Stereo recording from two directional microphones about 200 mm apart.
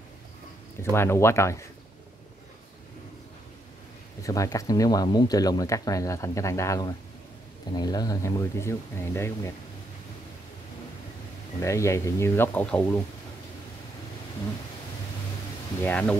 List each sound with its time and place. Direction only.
0.8 s speech: 15° left (ahead or behind)
4.2 s speech: 15° left (ahead or behind)
11.6 s speech: 15° left (ahead or behind)
15.8 s speech: 5° left (ahead or behind)